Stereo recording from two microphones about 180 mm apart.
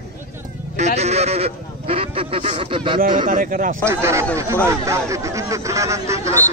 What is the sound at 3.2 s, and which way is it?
Speech, 50° right (ahead or behind).